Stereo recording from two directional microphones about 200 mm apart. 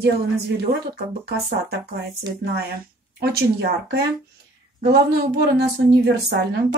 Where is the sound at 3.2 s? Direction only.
55° right (ahead or behind).